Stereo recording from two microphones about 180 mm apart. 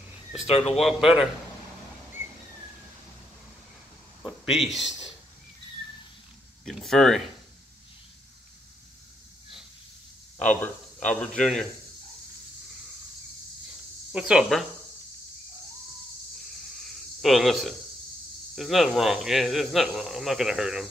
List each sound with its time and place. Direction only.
0.5 s speech: 35° left (ahead or behind)
0.7 s speech: centre (ahead or behind)
4.2 s a sound: centre (ahead or behind)
6.6 s speech: centre (ahead or behind)
10.4 s speech: 10° left (ahead or behind)
14.1 s speech: 5° right (ahead or behind)
16.8 s a sound: centre (ahead or behind)
18.5 s speech: centre (ahead or behind)